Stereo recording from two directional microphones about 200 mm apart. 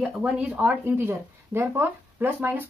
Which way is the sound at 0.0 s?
5° right (ahead or behind).